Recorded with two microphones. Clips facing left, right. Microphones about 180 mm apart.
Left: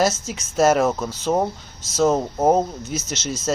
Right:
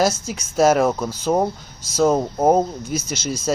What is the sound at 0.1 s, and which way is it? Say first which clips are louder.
A man's voice: right 2 dB; 5° left (ahead or behind).